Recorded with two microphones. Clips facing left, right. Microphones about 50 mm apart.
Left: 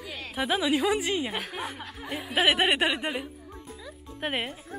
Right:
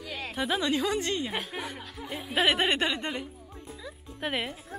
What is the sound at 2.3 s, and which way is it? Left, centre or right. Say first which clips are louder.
Speech: left 2 dB; centre.